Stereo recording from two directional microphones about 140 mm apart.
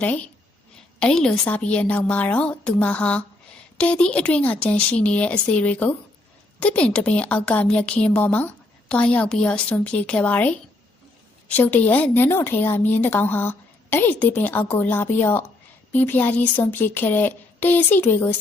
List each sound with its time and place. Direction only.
0.0 s a woman's voice: 10° left (ahead or behind)